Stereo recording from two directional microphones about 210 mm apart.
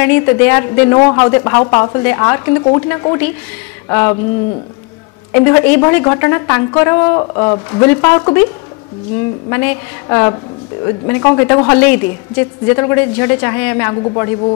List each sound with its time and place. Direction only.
0.0 s speech: 10° left (ahead or behind)
5.3 s speech: 10° left (ahead or behind)
9.5 s speech: 10° left (ahead or behind)